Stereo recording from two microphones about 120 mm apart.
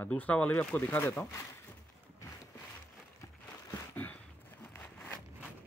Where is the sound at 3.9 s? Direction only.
15° left (ahead or behind).